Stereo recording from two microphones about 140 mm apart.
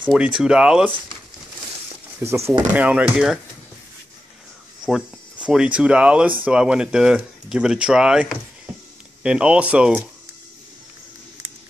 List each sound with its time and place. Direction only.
0.4 s speech: 5° right (ahead or behind)
2.3 s speech: 20° right (ahead or behind)
4.8 s speech: 5° right (ahead or behind)